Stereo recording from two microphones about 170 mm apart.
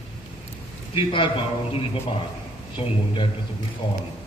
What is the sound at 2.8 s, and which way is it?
Speech, 30° left (ahead or behind).